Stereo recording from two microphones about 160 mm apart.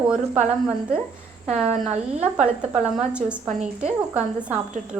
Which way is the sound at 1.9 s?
45° right (ahead or behind).